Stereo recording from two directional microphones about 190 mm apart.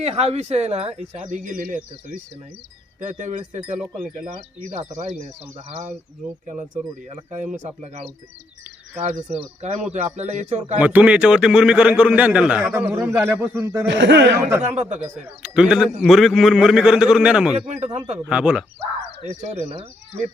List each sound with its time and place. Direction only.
0.0 s speech: 35° right (ahead or behind)
10.8 s a man's voice: 10° right (ahead or behind)
13.8 s speech: 70° right (ahead or behind)
14.6 s speech: 35° right (ahead or behind)
15.4 s a man's voice: 5° right (ahead or behind)
17.7 s speech: 35° right (ahead or behind)
18.3 s a man's voice: 5° right (ahead or behind)
19.2 s speech: 35° right (ahead or behind)